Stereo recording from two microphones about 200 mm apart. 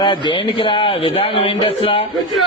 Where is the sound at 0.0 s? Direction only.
20° left (ahead or behind).